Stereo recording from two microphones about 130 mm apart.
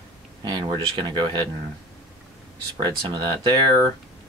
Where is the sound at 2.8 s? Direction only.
35° right (ahead or behind).